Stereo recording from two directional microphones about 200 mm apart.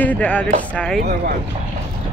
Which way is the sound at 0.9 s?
50° right (ahead or behind).